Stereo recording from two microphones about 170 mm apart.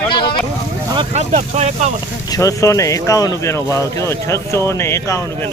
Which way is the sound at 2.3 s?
20° left (ahead or behind).